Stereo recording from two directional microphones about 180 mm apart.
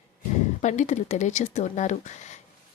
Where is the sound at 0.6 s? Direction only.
40° left (ahead or behind).